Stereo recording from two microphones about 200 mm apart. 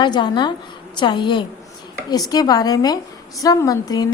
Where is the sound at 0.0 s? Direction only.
20° left (ahead or behind).